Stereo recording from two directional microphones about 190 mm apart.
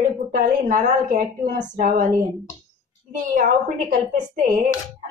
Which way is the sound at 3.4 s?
45° right (ahead or behind).